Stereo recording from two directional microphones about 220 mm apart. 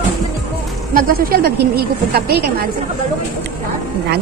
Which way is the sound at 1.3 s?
45° right (ahead or behind).